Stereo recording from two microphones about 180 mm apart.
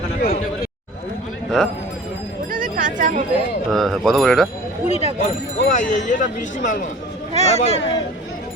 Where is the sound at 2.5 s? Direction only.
50° right (ahead or behind).